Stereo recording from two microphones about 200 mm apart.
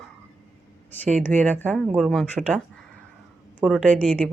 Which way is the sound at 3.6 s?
Centre (ahead or behind).